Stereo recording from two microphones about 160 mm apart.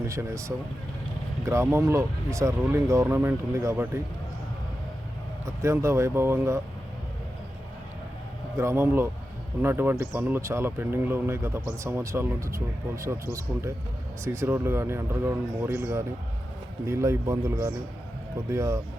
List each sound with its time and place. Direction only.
0.1 s speech: 20° right (ahead or behind)
5.5 s speech: 20° right (ahead or behind)
8.5 s speech: 15° right (ahead or behind)